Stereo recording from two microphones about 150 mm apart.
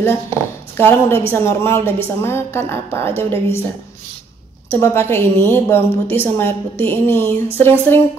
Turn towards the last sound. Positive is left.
turn(degrees=15)  # may be behind; listen again after turning